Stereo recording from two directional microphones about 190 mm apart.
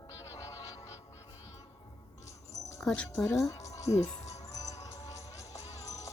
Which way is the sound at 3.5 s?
15° left (ahead or behind).